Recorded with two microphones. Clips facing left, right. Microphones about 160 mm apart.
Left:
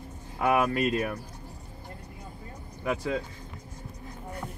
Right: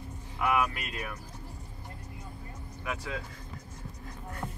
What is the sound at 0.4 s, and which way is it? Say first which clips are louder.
Speech: left 5 dB; 30° left (ahead or behind).